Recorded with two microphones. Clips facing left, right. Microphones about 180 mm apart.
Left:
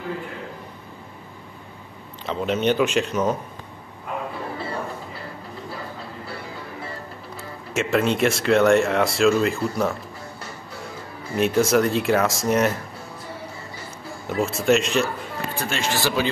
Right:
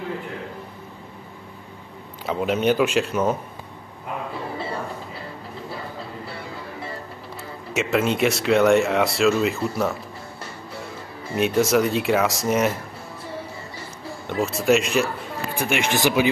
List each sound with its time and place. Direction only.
2.2 s speech: 5° right (ahead or behind)
7.7 s speech: centre (ahead or behind)
11.3 s speech: centre (ahead or behind)
14.2 s speech: centre (ahead or behind)
15.5 s speech: 15° right (ahead or behind)